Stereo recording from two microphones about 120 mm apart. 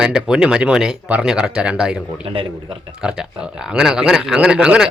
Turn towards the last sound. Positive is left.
turn(degrees=-10)  # may be behind; listen again after turning